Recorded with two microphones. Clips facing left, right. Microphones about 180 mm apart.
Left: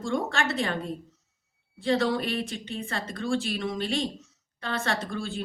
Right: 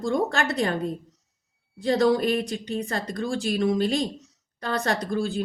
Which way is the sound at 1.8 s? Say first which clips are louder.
Right 4 dB; 40° right (ahead or behind).